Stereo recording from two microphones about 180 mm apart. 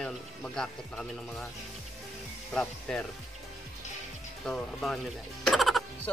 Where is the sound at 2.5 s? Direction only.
5° left (ahead or behind).